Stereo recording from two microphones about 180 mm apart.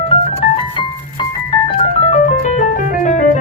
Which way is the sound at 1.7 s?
35° left (ahead or behind).